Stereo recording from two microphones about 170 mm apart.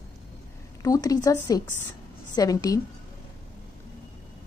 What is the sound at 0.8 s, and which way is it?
Speech, 20° left (ahead or behind).